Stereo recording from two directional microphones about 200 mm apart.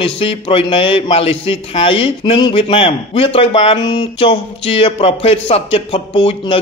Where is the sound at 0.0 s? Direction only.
30° left (ahead or behind).